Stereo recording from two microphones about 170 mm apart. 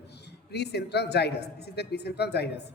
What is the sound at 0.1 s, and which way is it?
A woman's voice, 75° left (ahead or behind).